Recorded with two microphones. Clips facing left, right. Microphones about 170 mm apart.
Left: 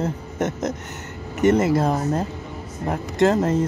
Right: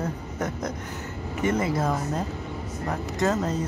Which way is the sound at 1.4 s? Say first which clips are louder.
Left 8 dB; 70° left (ahead or behind).